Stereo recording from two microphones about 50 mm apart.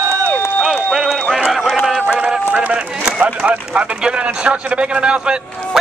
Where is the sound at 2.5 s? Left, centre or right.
Right.